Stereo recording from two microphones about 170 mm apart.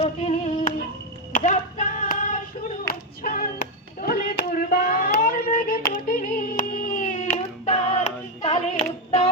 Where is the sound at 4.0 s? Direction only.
55° left (ahead or behind).